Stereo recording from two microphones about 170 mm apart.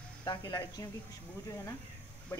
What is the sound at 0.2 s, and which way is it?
Speech, 25° left (ahead or behind).